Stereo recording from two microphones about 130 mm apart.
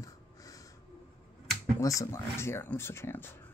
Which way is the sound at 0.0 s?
25° left (ahead or behind).